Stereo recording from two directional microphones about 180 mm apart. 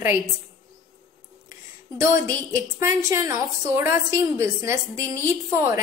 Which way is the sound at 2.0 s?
15° right (ahead or behind).